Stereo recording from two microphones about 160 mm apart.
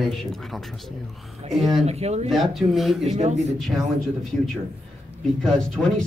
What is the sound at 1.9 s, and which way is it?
Speech, 40° right (ahead or behind).